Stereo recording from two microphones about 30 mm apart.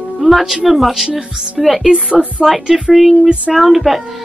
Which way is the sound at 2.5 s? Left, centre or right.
Centre.